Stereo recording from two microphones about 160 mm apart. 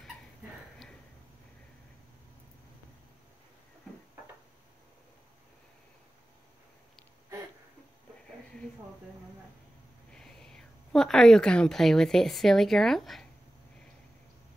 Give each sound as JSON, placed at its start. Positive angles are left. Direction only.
{"t": 10.1, "sound": "a woman's voice", "side_deg": 5}